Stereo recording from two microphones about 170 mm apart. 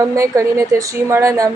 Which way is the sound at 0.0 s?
20° right (ahead or behind).